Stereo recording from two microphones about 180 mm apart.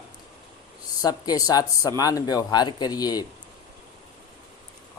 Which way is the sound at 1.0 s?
20° left (ahead or behind).